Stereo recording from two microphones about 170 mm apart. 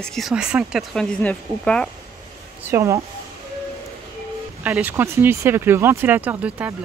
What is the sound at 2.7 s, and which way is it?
Speech, 15° right (ahead or behind).